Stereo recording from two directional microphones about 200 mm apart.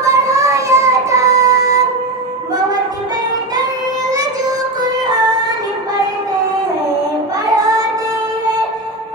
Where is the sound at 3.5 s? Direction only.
20° right (ahead or behind).